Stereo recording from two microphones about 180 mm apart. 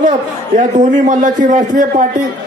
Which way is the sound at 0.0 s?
45° right (ahead or behind).